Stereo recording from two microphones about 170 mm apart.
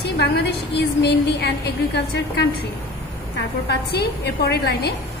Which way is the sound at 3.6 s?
75° left (ahead or behind).